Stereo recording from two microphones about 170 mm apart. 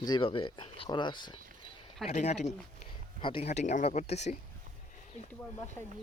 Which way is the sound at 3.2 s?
35° left (ahead or behind).